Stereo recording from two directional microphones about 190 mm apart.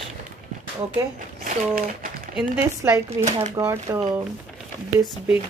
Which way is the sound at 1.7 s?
45° right (ahead or behind).